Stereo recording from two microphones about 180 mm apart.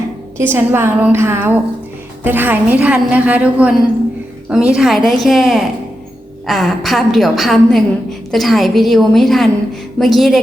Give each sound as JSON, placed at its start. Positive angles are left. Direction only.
{"t": 0.3, "sound": "a woman's voice", "side_deg": -15}